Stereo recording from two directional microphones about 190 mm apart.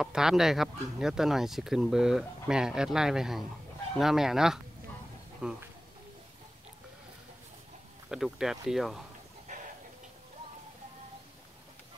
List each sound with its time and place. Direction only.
0.0 s speech: centre (ahead or behind)
8.1 s speech: centre (ahead or behind)